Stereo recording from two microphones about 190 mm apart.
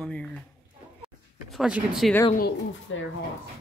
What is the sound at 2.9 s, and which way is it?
Speech, 85° left.